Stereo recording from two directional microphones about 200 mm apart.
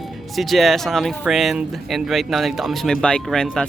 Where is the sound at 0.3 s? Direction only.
Centre (ahead or behind).